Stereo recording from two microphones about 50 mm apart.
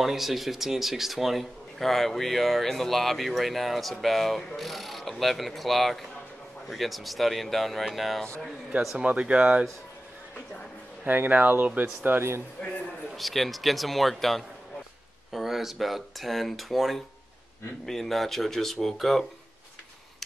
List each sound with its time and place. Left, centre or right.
0.0 s speech: centre
8.9 s speech: right
11.1 s speech: right
13.1 s speech: centre